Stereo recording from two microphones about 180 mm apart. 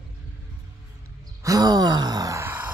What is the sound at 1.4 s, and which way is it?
Groan, 20° right (ahead or behind).